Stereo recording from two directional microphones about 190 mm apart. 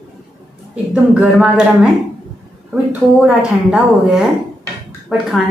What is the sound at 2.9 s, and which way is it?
A woman's voice, 5° right (ahead or behind).